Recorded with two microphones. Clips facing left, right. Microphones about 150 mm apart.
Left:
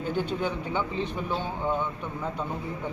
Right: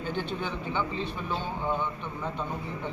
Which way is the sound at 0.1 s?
10° left (ahead or behind).